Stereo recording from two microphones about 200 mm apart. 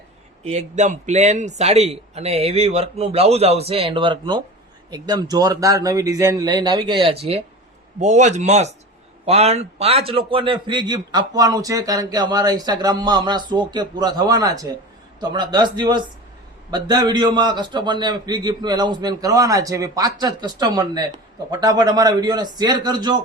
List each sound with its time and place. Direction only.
0.4 s a man's voice: 35° right (ahead or behind)
7.9 s a man's voice: 35° right (ahead or behind); by 23.2 s 20° right (ahead or behind)